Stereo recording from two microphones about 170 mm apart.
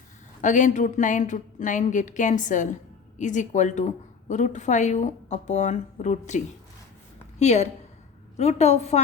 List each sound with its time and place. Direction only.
0.4 s a woman's voice: 45° left (ahead or behind)